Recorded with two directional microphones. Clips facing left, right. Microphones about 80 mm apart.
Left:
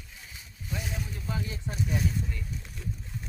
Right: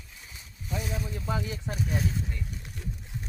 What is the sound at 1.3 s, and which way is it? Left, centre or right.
Speech, right.